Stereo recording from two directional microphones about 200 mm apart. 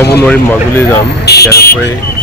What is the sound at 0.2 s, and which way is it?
Speech, 10° left (ahead or behind).